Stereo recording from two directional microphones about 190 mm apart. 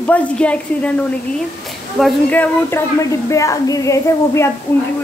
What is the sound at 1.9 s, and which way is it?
A woman's voice, 5° left (ahead or behind).